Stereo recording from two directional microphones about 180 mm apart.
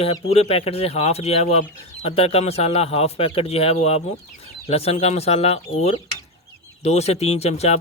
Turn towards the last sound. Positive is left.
turn(degrees=35)  # may be behind; listen again after turning